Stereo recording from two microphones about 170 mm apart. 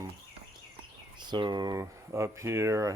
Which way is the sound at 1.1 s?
25° right (ahead or behind).